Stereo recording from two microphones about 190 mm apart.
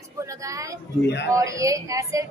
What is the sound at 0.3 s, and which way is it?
Speech, 15° right (ahead or behind).